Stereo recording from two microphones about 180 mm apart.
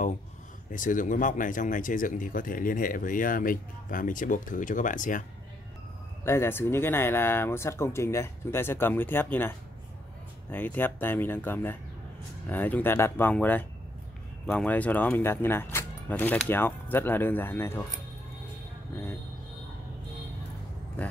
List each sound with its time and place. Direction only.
0.7 s speech: 45° left (ahead or behind)
6.2 s speech: 15° left (ahead or behind)